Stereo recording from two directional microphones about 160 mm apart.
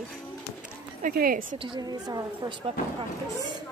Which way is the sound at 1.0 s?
65° right (ahead or behind).